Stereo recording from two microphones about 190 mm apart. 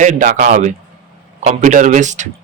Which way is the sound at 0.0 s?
40° right (ahead or behind).